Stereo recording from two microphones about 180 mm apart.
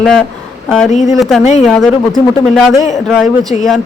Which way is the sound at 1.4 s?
40° left (ahead or behind).